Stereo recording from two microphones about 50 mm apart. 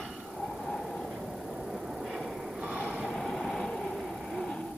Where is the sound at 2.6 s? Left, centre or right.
Right.